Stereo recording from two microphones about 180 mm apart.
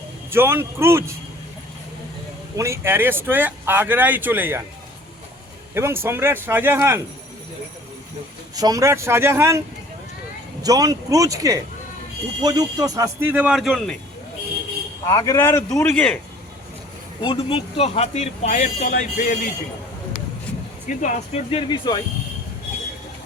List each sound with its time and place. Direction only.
0.3 s speech: 15° right (ahead or behind)
2.6 s speech: 15° right (ahead or behind)
5.7 s speech: 15° right (ahead or behind)
8.5 s speech: 20° right (ahead or behind)
10.6 s speech: 20° right (ahead or behind); by 13.9 s 5° left (ahead or behind)
15.0 s a man's voice: 20° left (ahead or behind)
17.2 s speech: 30° left (ahead or behind); by 19.4 s 45° left (ahead or behind)
20.8 s speech: 45° left (ahead or behind)
21.7 s speech: 25° left (ahead or behind)